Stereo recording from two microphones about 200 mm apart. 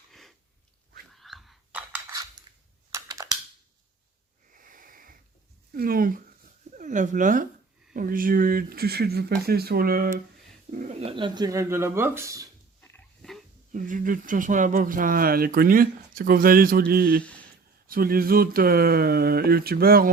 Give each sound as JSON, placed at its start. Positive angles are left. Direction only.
{"t": 0.1, "sound": "a sound", "side_deg": 0}
{"t": 2.0, "sound": "a sound", "side_deg": -15}
{"t": 2.9, "sound": "computer keyboard", "side_deg": -15}
{"t": 4.5, "sound": "wheeze", "side_deg": -45}
{"t": 5.7, "sound": "speech", "side_deg": -45}
{"t": 11.0, "sound": "speech", "side_deg": -25}
{"t": 12.8, "sound": "dog", "side_deg": 10}
{"t": 13.7, "sound": "speech", "side_deg": -40}